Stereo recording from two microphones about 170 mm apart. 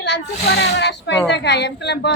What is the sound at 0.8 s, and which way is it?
A woman's voice, 90° left.